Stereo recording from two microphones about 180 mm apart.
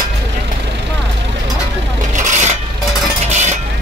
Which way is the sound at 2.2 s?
45° right (ahead or behind).